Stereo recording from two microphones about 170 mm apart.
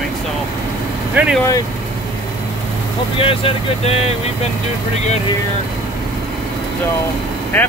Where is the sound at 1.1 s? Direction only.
5° right (ahead or behind).